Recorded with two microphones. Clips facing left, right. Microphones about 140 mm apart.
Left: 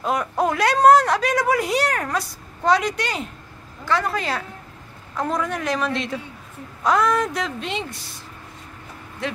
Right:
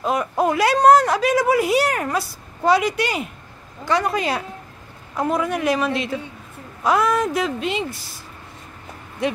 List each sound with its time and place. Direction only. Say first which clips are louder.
0.0 s a woman's voice: right 2 dB; centre (ahead or behind)
9.2 s a woman's voice: right 5 dB; 15° right (ahead or behind)